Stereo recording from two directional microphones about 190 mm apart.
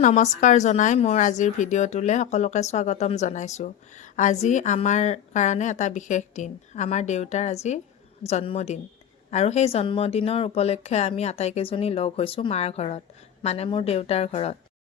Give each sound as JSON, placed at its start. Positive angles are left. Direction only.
{"t": 0.0, "sound": "a woman's voice", "side_deg": 40}